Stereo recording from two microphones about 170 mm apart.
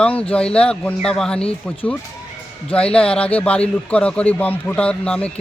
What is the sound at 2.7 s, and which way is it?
A man's voice, 5° left (ahead or behind).